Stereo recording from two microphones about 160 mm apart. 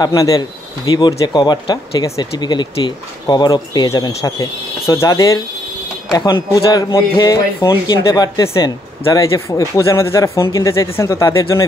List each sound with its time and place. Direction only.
0.0 s speech: 25° left (ahead or behind)